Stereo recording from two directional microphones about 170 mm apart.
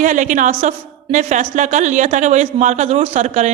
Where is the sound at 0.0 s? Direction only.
50° right (ahead or behind).